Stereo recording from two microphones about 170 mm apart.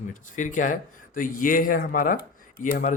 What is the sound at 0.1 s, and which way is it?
Speech, 50° left (ahead or behind).